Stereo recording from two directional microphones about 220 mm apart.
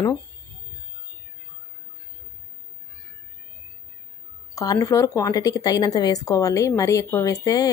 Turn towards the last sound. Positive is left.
turn(degrees=15)  # may be behind; listen again after turning